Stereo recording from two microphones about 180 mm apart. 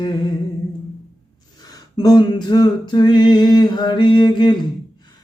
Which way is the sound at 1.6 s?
20° left (ahead or behind).